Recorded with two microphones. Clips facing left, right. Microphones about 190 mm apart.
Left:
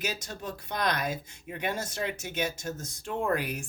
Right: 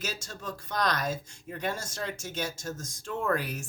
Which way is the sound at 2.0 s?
20° left (ahead or behind).